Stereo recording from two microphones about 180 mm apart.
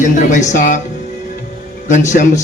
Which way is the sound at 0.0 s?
40° left (ahead or behind).